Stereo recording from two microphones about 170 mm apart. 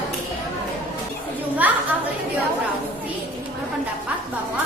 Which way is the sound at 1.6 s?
10° right (ahead or behind).